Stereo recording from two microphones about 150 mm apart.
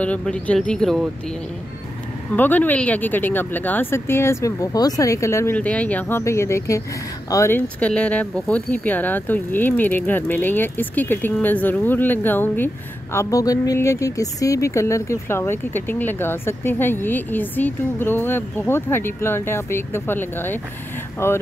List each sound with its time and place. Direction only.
0.0 s speech: 10° left (ahead or behind)
2.3 s speech: 10° left (ahead or behind)